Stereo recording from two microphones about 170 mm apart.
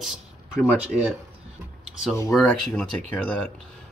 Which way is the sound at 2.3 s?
5° left (ahead or behind).